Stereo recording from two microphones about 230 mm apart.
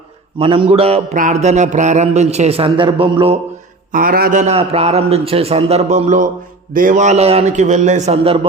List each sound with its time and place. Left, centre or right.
0.3 s mantra: right
3.9 s mantra: right
6.7 s a man's voice: right